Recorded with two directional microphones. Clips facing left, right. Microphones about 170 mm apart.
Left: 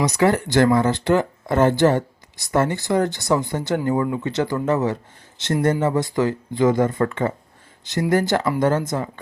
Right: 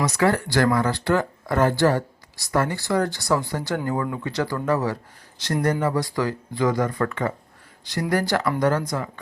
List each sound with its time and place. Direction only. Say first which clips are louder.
0.0 s speech: left 3 dB; 20° left (ahead or behind)